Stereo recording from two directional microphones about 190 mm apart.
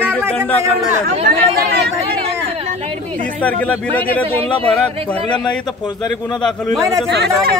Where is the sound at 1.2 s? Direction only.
55° right (ahead or behind).